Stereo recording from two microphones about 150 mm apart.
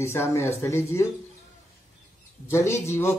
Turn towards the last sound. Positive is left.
turn(degrees=15)  # may be behind; listen again after turning